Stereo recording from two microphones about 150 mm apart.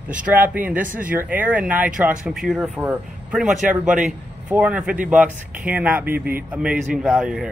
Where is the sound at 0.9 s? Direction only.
65° right (ahead or behind).